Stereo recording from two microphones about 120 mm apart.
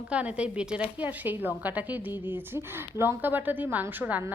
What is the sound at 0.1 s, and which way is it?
A woman's voice, 10° right (ahead or behind).